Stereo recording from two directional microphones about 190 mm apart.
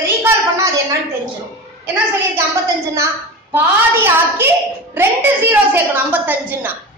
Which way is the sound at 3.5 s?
10° right (ahead or behind).